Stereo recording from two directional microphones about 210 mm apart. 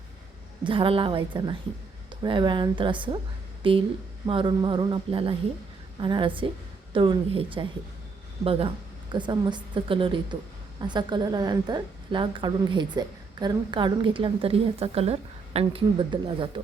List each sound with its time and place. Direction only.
0.6 s a woman's voice: 25° right (ahead or behind)